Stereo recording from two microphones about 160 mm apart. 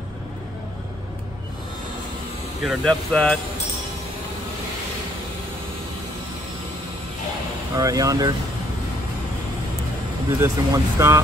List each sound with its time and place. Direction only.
2.6 s speech: centre (ahead or behind)
7.7 s speech: 20° right (ahead or behind)
10.4 s speech: 20° right (ahead or behind)